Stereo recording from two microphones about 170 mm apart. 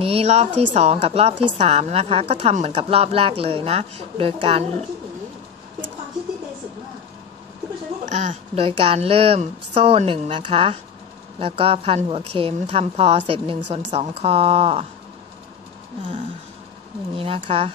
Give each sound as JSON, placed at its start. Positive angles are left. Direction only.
{"t": 0.0, "sound": "a woman's voice", "side_deg": -35}
{"t": 8.0, "sound": "a woman's voice", "side_deg": -45}
{"t": 17.2, "sound": "a woman's voice", "side_deg": -35}